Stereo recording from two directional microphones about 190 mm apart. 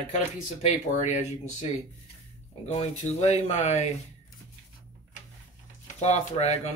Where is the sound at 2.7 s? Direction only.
35° left (ahead or behind).